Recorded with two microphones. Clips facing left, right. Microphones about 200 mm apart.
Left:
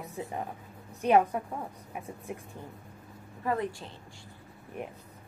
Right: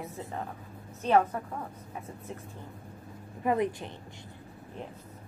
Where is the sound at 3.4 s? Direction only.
20° right (ahead or behind).